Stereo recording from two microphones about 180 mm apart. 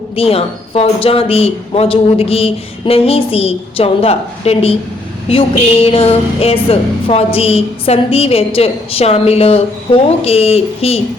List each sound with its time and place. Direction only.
0.2 s a woman's voice: 35° left (ahead or behind)